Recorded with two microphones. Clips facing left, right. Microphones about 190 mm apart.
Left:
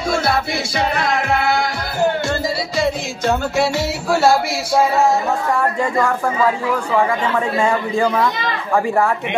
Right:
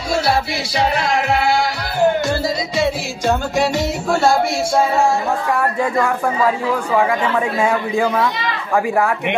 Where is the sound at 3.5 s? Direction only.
15° right (ahead or behind).